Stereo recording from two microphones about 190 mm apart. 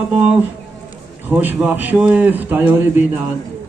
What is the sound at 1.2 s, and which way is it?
A man's voice, 10° right (ahead or behind).